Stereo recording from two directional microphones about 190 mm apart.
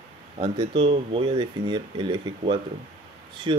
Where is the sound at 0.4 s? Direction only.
25° right (ahead or behind).